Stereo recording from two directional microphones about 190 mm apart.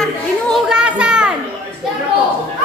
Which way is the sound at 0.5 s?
5° right (ahead or behind).